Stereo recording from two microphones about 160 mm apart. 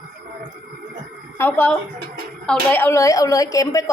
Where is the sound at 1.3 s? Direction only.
15° left (ahead or behind).